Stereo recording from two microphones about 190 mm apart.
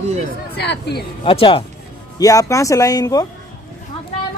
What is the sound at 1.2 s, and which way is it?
Speech, 25° left (ahead or behind).